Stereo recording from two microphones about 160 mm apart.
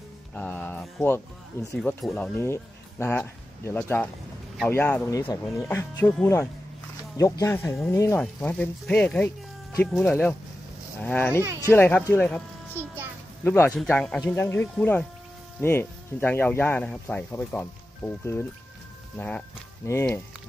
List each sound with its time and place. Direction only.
0.3 s speech: 10° left (ahead or behind)
1.8 s speech: 5° left (ahead or behind)
8.2 s speech: 5° left (ahead or behind)